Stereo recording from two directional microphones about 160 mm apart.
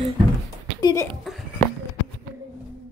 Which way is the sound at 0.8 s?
25° left (ahead or behind).